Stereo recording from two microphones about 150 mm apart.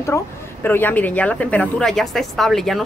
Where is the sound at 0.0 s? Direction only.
15° left (ahead or behind).